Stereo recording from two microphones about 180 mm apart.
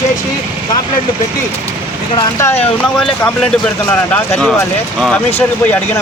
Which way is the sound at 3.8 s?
10° left (ahead or behind).